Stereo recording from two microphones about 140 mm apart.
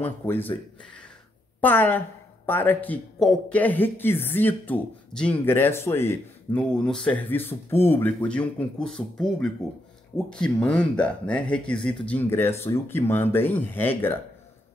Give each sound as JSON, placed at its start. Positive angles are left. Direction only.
{"t": 0.0, "sound": "speech", "side_deg": 15}
{"t": 1.6, "sound": "speech", "side_deg": 15}